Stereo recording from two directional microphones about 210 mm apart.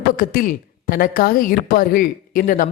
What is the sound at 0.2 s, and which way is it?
Speech, 40° left (ahead or behind).